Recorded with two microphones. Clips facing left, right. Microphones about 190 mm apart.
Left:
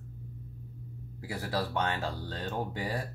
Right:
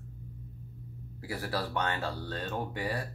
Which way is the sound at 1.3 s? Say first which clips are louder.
Left 1 dB; 15° left (ahead or behind).